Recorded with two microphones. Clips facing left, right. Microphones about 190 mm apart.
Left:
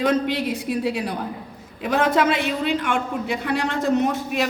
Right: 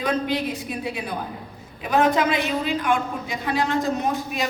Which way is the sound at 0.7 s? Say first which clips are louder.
Left 6 dB; 75° left (ahead or behind).